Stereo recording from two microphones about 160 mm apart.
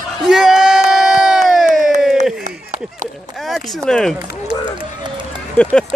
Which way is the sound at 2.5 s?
50° right (ahead or behind).